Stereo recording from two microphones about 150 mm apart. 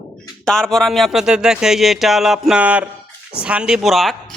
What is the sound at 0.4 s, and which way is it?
Speech, 5° left (ahead or behind).